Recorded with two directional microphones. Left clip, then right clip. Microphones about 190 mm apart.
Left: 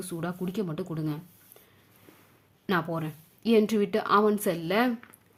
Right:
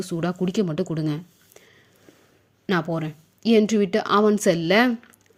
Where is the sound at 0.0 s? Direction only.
25° right (ahead or behind).